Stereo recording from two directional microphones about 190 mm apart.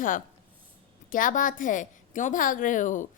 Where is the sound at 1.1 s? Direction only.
45° left (ahead or behind).